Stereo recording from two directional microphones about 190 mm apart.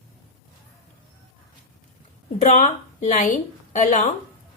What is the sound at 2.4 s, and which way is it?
A woman's voice, 40° left (ahead or behind).